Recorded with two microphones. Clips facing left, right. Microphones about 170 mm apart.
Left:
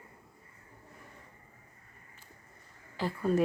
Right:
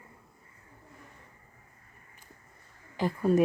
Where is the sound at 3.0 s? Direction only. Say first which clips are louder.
Right 4 dB; 15° right (ahead or behind).